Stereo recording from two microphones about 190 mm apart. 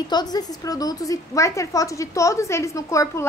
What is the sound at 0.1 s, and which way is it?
A woman's voice, 20° left (ahead or behind).